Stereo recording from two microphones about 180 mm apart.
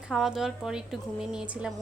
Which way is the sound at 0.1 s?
Centre (ahead or behind).